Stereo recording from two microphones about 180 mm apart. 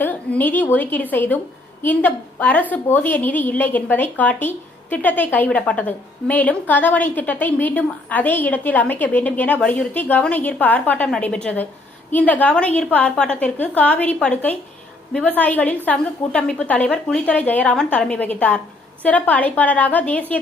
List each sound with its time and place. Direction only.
0.0 s a woman's voice: 10° left (ahead or behind)